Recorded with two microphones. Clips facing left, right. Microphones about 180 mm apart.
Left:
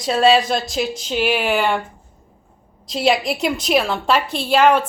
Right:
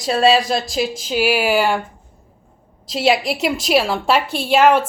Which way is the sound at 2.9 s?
Centre (ahead or behind).